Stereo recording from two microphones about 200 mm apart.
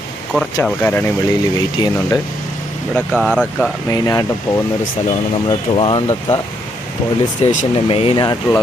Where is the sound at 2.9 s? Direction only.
Centre (ahead or behind).